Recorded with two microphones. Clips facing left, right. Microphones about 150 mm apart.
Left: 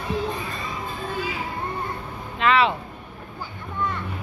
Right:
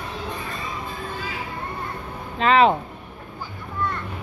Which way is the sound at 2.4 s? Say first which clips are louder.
Right 3 dB; 40° right (ahead or behind).